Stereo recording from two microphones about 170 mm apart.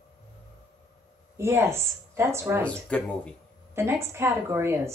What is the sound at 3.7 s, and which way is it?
Speech, 15° right (ahead or behind).